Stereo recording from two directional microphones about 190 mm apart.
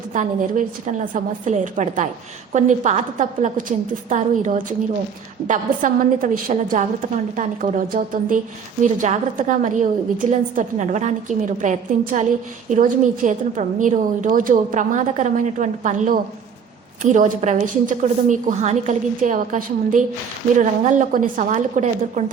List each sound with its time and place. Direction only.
0.1 s a woman's voice: 40° right (ahead or behind)